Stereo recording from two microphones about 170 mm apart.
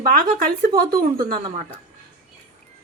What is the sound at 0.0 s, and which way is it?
Speech, 55° right (ahead or behind).